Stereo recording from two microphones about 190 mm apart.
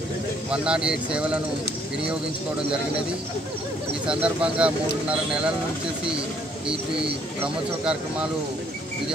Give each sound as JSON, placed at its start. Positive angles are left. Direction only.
{"t": 0.5, "sound": "speech", "side_deg": -5}
{"t": 4.0, "sound": "speech", "side_deg": -5}
{"t": 7.3, "sound": "speech", "side_deg": -5}